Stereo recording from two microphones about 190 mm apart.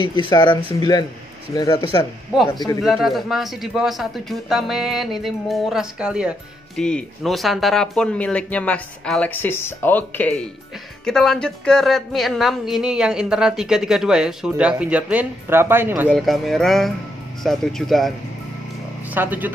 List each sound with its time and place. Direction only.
0.1 s speech: 25° left (ahead or behind)
2.8 s speech: centre (ahead or behind)
16.1 s speech: centre (ahead or behind)
19.1 s speech: 10° right (ahead or behind)